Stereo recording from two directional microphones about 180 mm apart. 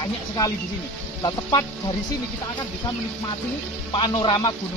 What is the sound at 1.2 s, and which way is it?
Speech, 25° left (ahead or behind).